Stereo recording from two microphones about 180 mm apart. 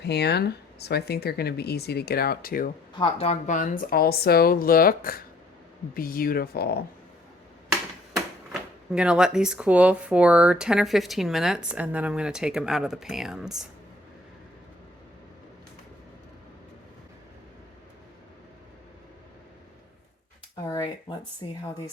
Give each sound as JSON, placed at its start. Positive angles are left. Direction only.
{"t": 0.0, "sound": "speech", "side_deg": 65}
{"t": 3.0, "sound": "speech", "side_deg": 35}
{"t": 8.9, "sound": "speech", "side_deg": -5}
{"t": 21.4, "sound": "speech", "side_deg": 25}